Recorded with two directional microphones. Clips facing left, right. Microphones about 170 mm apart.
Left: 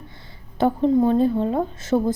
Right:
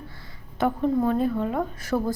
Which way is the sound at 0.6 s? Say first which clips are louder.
Left 5 dB; 30° left (ahead or behind).